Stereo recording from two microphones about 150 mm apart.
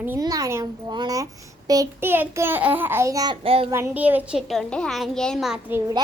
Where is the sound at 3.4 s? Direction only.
40° right (ahead or behind).